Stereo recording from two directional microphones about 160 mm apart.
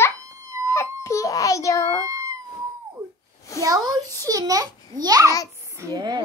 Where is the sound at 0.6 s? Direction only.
20° left (ahead or behind).